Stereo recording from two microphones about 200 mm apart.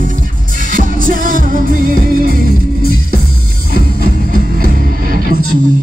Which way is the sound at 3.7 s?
45° right (ahead or behind).